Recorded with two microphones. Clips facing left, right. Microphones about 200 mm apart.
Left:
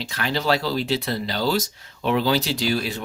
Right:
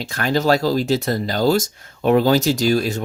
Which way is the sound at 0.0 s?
50° right (ahead or behind).